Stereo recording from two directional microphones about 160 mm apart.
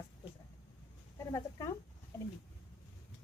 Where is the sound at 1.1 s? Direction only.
20° left (ahead or behind).